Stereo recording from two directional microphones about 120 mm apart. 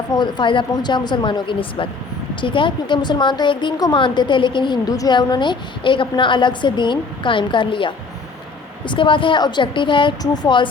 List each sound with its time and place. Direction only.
0.1 s a woman's voice: 40° left (ahead or behind)